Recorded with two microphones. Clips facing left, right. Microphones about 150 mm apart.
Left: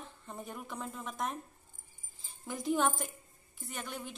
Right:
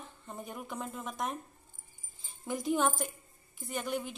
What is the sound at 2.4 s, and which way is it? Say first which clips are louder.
A woman's voice: right 1 dB; centre (ahead or behind).